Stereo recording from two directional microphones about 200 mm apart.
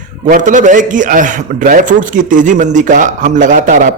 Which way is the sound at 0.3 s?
40° right (ahead or behind).